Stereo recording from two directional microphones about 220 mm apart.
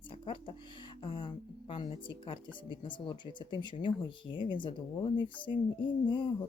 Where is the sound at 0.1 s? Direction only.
20° left (ahead or behind).